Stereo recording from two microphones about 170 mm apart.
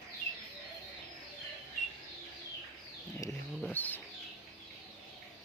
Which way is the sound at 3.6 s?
10° left (ahead or behind).